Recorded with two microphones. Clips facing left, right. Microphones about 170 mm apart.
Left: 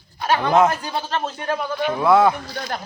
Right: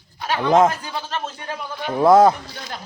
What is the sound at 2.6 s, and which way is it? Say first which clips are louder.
Speech: left 6 dB; 55° left (ahead or behind).